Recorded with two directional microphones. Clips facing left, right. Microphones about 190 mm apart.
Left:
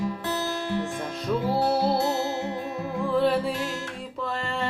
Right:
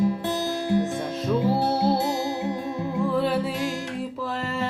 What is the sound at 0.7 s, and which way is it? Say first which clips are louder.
Music: right 5 dB; 15° right (ahead or behind).